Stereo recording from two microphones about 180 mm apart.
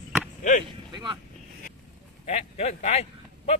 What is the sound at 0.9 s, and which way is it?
Speech, 25° right (ahead or behind).